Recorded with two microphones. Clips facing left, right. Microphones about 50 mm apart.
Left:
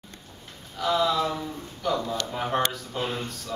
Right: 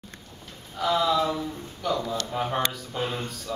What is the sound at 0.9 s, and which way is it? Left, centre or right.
Speech, centre.